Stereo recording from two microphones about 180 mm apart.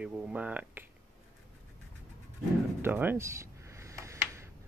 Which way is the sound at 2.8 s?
10° right (ahead or behind).